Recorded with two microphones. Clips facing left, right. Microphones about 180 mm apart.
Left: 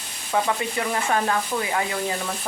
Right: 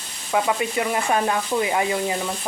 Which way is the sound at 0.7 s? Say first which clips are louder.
Right 1 dB; 20° right (ahead or behind).